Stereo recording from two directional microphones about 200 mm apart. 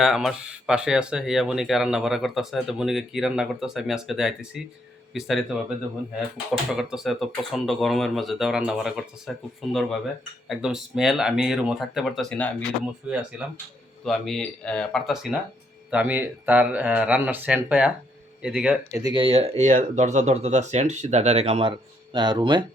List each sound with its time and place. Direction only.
0.0 s speech: centre (ahead or behind)
6.7 s speech: centre (ahead or behind)
13.1 s speech: 5° right (ahead or behind)
19.0 s speech: 25° right (ahead or behind)